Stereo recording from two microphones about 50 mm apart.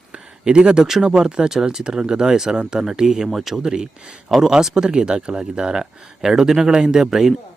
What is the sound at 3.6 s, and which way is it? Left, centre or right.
Speech, centre.